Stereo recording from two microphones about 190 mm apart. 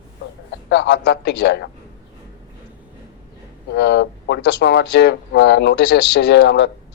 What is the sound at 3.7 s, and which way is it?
Speech, 60° left (ahead or behind).